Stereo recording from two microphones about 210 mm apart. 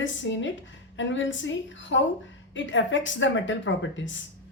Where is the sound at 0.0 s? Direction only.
60° left (ahead or behind).